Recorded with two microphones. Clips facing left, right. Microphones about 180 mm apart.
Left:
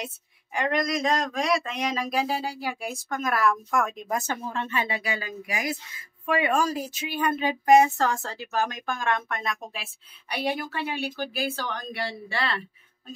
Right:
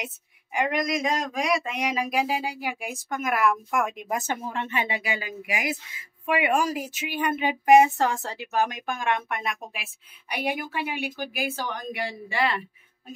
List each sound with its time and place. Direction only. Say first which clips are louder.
0.0 s speech: left 1 dB; 15° right (ahead or behind)